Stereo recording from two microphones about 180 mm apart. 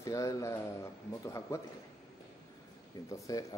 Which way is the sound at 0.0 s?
15° left (ahead or behind).